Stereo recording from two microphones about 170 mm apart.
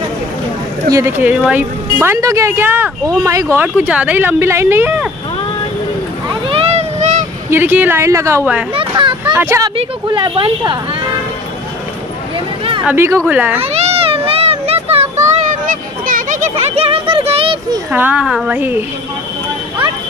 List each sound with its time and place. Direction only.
0.8 s speech: 20° right (ahead or behind)
6.4 s boat: 35° right (ahead or behind)
7.4 s speech: 15° right (ahead or behind)
8.7 s speech: 30° right (ahead or behind)
9.3 s speech: 15° right (ahead or behind)
9.8 s speech: 30° right (ahead or behind)
12.8 s speech: 15° right (ahead or behind)
13.6 s a sound: 40° right (ahead or behind)
15.3 s a sound: 50° right (ahead or behind)
17.9 s speech: 10° right (ahead or behind)